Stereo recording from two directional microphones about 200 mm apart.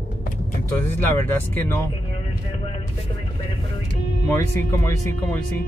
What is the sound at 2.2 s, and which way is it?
Vehicle, 30° left (ahead or behind).